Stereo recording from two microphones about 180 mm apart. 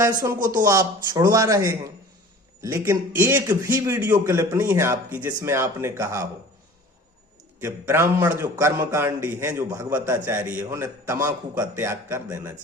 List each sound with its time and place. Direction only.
0.0 s a man's voice: 20° right (ahead or behind)
7.6 s a man's voice: 15° right (ahead or behind)